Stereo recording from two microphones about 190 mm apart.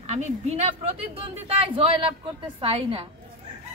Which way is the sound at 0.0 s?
35° right (ahead or behind).